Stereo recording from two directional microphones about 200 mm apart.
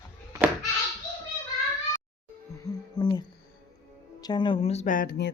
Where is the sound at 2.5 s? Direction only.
20° left (ahead or behind).